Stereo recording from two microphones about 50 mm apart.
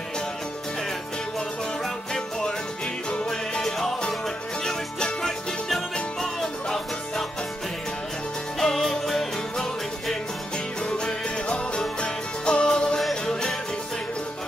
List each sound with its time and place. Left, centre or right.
3.1 s music: centre
3.6 s music: centre
8.5 s music: centre
11.4 s music: left